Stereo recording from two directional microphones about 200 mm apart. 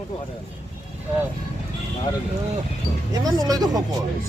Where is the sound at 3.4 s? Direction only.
20° right (ahead or behind).